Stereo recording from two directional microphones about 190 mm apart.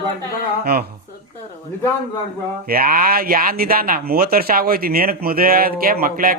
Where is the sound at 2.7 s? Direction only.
50° right (ahead or behind).